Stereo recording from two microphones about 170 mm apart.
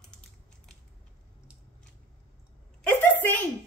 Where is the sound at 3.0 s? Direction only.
10° left (ahead or behind).